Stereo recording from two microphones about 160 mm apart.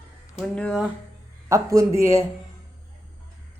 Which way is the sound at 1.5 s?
20° right (ahead or behind).